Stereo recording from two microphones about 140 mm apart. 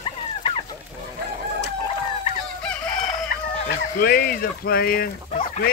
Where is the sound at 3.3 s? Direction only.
85° left.